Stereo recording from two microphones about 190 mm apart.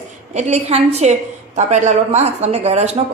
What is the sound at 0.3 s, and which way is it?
A woman's voice, 35° right (ahead or behind).